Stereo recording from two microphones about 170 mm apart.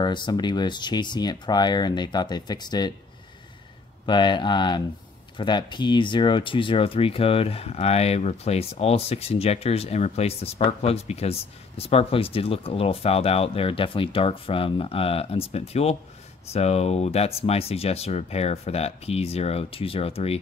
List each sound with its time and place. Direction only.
0.0 s speech: 25° left (ahead or behind)
4.0 s speech: 25° left (ahead or behind)